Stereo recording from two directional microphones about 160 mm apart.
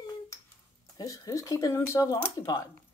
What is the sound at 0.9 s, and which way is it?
Speech, 25° left (ahead or behind).